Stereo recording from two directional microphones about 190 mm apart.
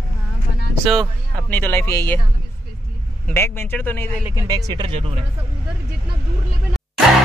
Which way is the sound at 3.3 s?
10° left (ahead or behind).